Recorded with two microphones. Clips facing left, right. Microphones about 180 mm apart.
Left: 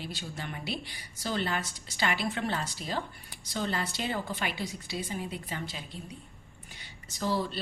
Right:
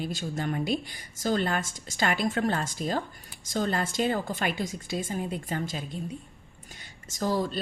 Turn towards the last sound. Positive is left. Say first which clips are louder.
# right 3 dB
turn(degrees=-45)  # may be behind; listen again after turning